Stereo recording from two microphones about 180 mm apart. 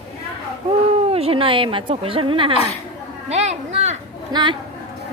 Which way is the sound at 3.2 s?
40° right (ahead or behind).